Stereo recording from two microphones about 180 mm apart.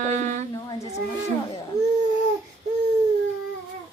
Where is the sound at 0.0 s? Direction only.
45° right (ahead or behind).